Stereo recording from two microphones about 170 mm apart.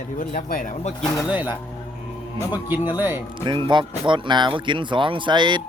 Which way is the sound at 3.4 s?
30° right (ahead or behind).